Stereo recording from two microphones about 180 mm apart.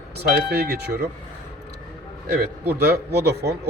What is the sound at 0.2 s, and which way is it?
Speech, 60° right (ahead or behind).